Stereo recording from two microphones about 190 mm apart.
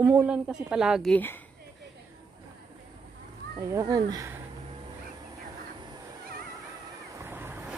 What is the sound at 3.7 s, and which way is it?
Speech, 20° right (ahead or behind).